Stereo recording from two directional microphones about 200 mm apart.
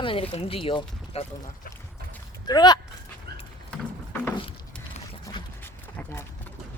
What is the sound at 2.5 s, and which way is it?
Speech, 20° left (ahead or behind).